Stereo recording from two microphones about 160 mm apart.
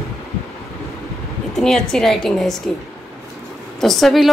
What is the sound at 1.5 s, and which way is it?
Speech, 5° left (ahead or behind).